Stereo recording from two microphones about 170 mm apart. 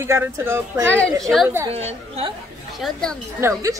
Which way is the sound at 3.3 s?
15° right (ahead or behind).